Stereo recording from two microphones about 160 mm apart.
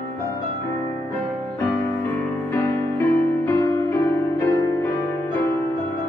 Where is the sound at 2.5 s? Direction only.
15° left (ahead or behind).